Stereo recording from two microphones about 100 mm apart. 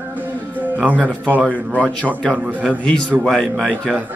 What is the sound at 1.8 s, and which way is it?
A man's voice, 10° left (ahead or behind).